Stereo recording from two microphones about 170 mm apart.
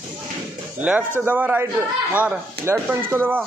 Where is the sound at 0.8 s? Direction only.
10° right (ahead or behind).